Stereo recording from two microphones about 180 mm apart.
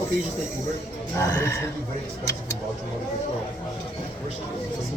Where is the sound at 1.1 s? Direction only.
15° left (ahead or behind).